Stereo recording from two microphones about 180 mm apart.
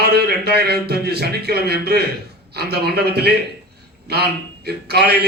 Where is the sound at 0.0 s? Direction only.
65° right (ahead or behind).